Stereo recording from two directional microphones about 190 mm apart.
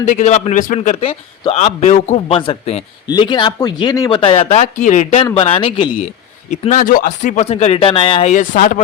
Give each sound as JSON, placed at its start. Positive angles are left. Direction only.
{"t": 0.0, "sound": "a man's voice", "side_deg": 35}